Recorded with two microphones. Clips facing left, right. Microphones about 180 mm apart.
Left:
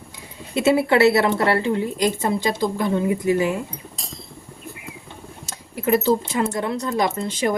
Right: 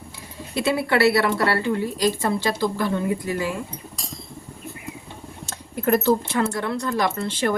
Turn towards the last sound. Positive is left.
turn(degrees=15)  # may be behind; listen again after turning